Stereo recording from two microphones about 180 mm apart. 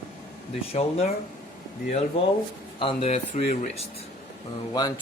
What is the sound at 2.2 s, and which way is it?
Speech, 35° left (ahead or behind).